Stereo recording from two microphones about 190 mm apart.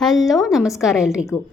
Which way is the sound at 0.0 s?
Centre (ahead or behind).